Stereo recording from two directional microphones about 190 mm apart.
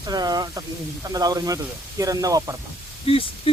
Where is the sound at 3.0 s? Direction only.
30° left (ahead or behind).